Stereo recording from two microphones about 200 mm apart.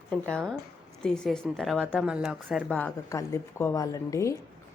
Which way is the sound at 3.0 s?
15° left (ahead or behind).